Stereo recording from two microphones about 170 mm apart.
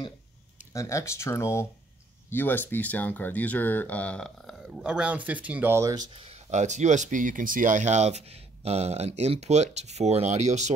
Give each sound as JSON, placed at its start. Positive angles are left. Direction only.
{"t": 0.7, "sound": "speech", "side_deg": 15}